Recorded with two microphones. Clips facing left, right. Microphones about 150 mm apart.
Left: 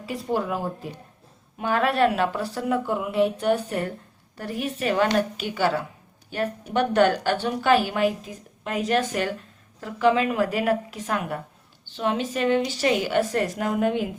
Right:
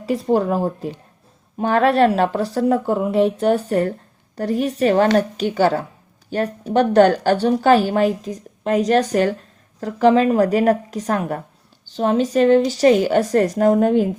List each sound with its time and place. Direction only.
0.0 s a woman's voice: 40° right (ahead or behind)